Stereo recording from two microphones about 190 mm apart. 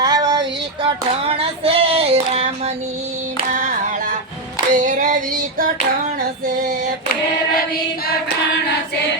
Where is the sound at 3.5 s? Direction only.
40° right (ahead or behind).